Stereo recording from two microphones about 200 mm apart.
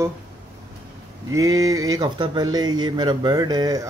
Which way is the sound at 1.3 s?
15° right (ahead or behind).